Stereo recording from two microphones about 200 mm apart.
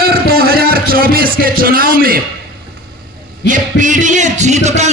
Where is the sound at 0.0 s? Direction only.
50° right (ahead or behind).